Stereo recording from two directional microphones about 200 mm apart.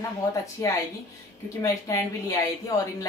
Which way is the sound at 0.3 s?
15° left (ahead or behind).